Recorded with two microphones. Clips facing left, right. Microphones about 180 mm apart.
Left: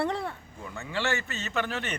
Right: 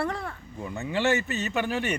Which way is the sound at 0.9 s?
20° right (ahead or behind).